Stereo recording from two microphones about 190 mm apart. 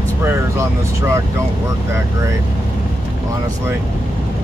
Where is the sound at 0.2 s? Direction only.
15° right (ahead or behind).